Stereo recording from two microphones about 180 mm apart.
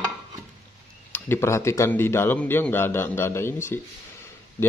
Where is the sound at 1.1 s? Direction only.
15° left (ahead or behind).